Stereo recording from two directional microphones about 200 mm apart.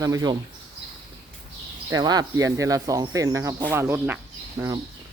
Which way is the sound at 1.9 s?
20° right (ahead or behind).